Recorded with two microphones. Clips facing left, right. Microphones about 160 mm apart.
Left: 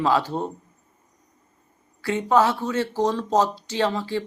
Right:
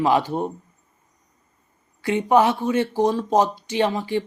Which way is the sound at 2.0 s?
15° right (ahead or behind).